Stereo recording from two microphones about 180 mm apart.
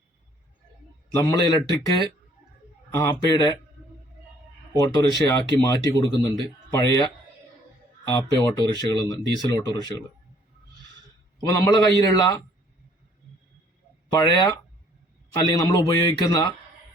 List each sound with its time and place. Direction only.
1.2 s speech: 20° left (ahead or behind)
4.8 s speech: 20° left (ahead or behind)
11.3 s speech: 20° left (ahead or behind)
14.1 s speech: 25° left (ahead or behind)